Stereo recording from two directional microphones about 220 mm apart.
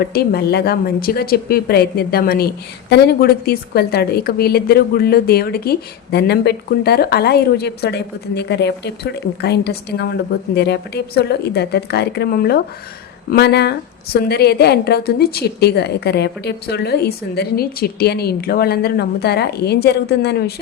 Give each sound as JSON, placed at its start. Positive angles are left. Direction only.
{"t": 0.0, "sound": "a woman's voice", "side_deg": 45}